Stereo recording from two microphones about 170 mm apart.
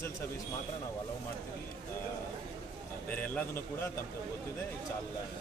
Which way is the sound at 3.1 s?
10° left (ahead or behind).